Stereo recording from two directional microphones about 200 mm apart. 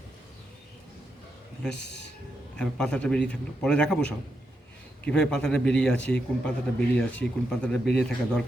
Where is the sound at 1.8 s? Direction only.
60° left (ahead or behind).